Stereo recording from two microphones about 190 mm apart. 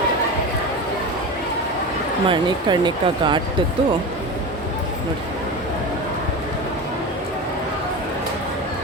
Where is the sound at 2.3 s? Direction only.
25° right (ahead or behind).